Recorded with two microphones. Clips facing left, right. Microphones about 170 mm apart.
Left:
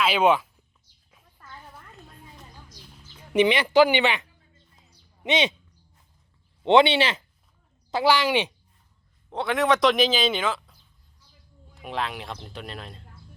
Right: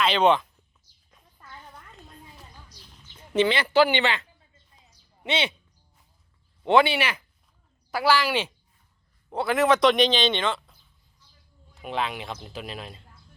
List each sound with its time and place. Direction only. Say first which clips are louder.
0.0 s speech: even; 5° left (ahead or behind)
1.1 s a sound: left 1 dB; centre (ahead or behind)
2.9 s speech: left 2 dB; 15° left (ahead or behind)
6.6 s speech: left 2 dB; 20° left (ahead or behind)
9.3 s a man's voice: right 1 dB; centre (ahead or behind)